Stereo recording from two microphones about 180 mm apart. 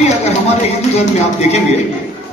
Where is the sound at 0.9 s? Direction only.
35° left (ahead or behind).